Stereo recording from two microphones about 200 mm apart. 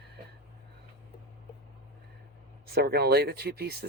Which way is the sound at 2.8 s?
50° right (ahead or behind).